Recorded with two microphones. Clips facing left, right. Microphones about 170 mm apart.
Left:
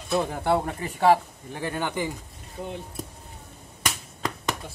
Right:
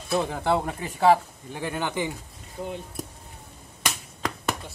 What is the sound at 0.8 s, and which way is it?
Speech, centre (ahead or behind).